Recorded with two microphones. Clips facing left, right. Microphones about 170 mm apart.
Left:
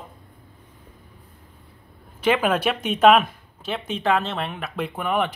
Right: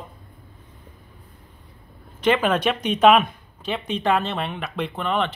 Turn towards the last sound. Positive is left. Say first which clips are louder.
# even
turn(degrees=10)  # may be behind; listen again after turning